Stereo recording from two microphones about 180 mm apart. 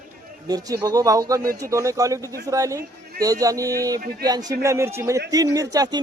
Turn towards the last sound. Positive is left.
turn(degrees=-20)  # may be behind; listen again after turning